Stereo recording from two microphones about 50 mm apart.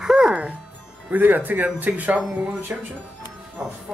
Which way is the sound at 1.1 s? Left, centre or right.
Right.